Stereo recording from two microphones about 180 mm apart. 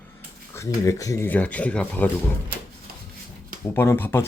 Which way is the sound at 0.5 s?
15° left (ahead or behind).